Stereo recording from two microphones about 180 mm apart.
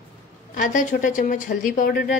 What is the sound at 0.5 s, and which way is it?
A woman's voice, 45° left (ahead or behind).